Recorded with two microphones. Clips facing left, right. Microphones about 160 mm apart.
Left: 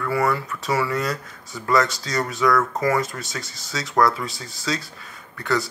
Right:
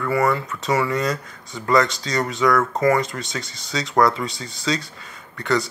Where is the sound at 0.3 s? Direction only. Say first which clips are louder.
Right 2 dB; 20° right (ahead or behind).